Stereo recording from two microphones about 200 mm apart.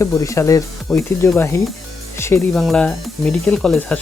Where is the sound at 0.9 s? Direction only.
Centre (ahead or behind).